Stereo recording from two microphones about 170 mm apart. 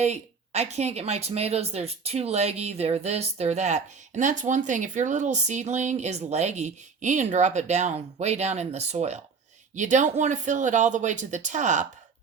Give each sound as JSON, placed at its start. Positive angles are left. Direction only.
{"t": 0.0, "sound": "speech", "side_deg": -40}